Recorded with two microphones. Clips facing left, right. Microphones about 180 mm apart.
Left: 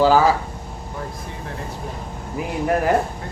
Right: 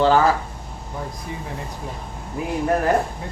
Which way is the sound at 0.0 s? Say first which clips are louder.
Left 1 dB; 5° left (ahead or behind).